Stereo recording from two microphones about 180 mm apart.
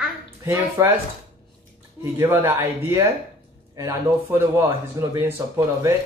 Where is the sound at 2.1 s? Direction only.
10° right (ahead or behind).